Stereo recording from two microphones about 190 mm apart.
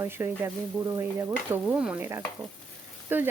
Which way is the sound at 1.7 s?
5° right (ahead or behind).